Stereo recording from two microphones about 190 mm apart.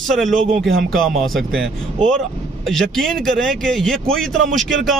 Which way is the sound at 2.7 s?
Centre (ahead or behind).